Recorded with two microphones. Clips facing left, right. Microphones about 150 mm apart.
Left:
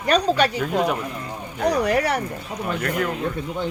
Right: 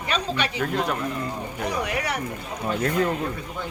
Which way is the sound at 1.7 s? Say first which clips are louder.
Left 8 dB; 35° left (ahead or behind).